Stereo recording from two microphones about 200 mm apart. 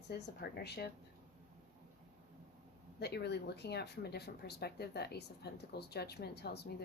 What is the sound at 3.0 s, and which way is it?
Speech, 55° left (ahead or behind).